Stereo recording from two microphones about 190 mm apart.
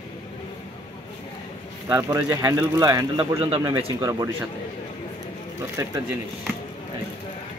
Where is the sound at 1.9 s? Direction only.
15° right (ahead or behind).